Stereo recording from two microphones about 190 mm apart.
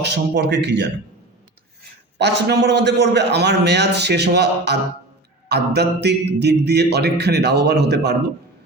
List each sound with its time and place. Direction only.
0.0 s a man's voice: 60° right (ahead or behind)
2.1 s a man's voice: 60° right (ahead or behind)